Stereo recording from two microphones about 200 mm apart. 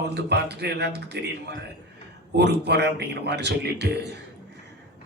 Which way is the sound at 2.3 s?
55° right (ahead or behind).